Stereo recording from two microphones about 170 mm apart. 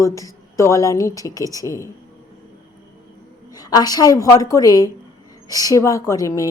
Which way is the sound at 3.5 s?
25° left (ahead or behind).